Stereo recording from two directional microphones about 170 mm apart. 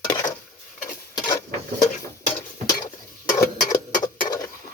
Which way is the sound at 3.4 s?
20° left (ahead or behind).